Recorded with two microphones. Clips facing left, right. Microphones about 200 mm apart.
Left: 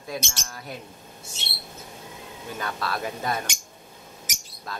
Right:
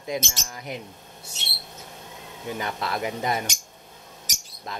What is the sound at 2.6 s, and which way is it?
Speech, 20° right (ahead or behind).